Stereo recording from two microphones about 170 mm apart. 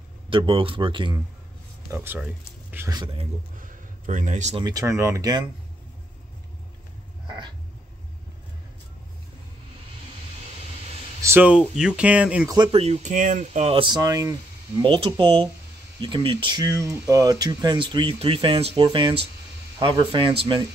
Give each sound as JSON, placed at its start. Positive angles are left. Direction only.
{"t": 0.3, "sound": "speech", "side_deg": -30}
{"t": 1.9, "sound": "speech", "side_deg": -10}
{"t": 3.5, "sound": "a man's voice", "side_deg": -50}
{"t": 4.6, "sound": "speech", "side_deg": -20}
{"t": 11.1, "sound": "speech", "side_deg": -15}
{"t": 12.7, "sound": "speech", "side_deg": -40}
{"t": 14.8, "sound": "speech", "side_deg": -30}